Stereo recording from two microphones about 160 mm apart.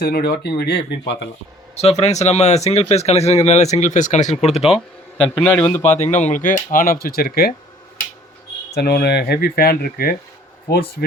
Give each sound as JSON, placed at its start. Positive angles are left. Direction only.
{"t": 0.0, "sound": "speech", "side_deg": 75}
{"t": 1.7, "sound": "speech", "side_deg": 40}
{"t": 5.1, "sound": "a man's voice", "side_deg": 10}
{"t": 6.1, "sound": "speech", "side_deg": 50}
{"t": 8.7, "sound": "speech", "side_deg": 85}